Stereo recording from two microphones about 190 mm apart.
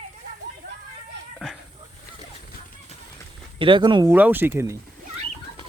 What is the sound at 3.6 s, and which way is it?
Speech, 25° right (ahead or behind).